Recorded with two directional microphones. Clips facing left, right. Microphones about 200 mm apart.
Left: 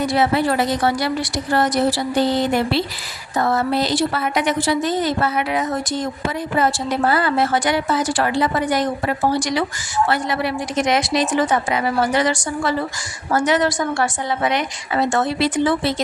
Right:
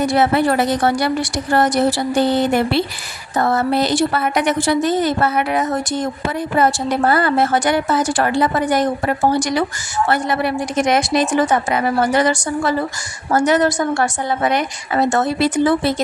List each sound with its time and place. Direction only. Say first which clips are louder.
0.2 s a woman's voice: right 2 dB; 55° right (ahead or behind)